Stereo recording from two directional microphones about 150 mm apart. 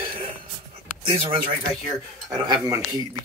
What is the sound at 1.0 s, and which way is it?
Speech, 40° right (ahead or behind).